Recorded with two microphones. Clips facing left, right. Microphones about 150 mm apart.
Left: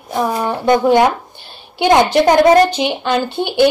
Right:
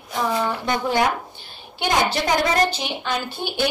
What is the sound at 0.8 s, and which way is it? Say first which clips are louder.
A woman's voice: left 9 dB; 65° left (ahead or behind).